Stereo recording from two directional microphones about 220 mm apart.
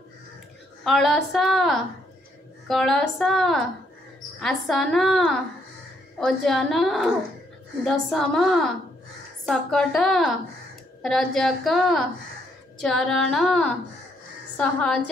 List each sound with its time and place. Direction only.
0.8 s a woman's voice: centre (ahead or behind)